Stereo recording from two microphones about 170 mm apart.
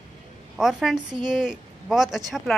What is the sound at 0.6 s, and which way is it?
Speech, 5° right (ahead or behind).